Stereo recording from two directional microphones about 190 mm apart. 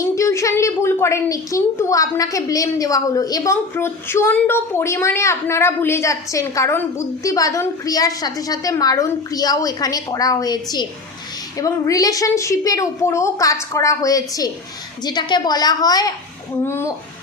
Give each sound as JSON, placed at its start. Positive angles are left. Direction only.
{"t": 0.0, "sound": "a woman's voice", "side_deg": 15}